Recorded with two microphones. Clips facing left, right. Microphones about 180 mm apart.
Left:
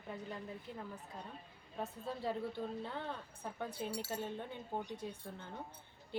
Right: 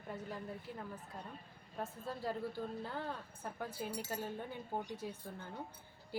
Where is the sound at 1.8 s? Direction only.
Centre (ahead or behind).